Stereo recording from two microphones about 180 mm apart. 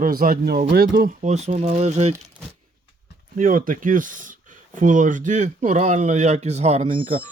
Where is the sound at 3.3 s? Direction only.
50° right (ahead or behind); by 7.2 s 35° right (ahead or behind).